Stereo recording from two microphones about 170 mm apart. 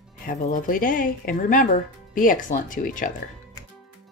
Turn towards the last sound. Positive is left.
turn(degrees=50)  # may be behind; listen again after turning